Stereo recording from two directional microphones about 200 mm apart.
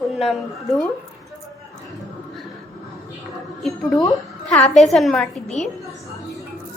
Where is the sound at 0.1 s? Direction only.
Centre (ahead or behind).